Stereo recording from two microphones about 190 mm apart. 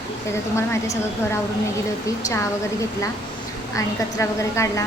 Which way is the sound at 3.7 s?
15° left (ahead or behind).